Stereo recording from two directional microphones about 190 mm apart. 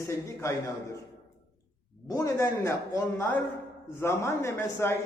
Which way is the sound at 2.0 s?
15° left (ahead or behind).